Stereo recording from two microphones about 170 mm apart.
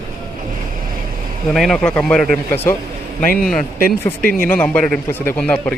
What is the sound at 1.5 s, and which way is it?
Speech, centre (ahead or behind).